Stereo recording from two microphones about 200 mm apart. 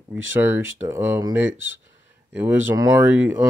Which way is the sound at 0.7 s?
15° right (ahead or behind).